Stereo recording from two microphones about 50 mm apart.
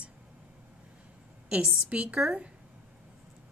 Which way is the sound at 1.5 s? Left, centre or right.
Right.